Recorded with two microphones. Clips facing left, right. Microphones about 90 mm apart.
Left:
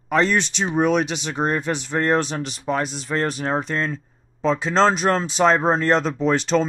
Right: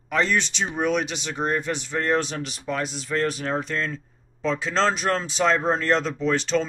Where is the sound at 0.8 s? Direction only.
20° left (ahead or behind).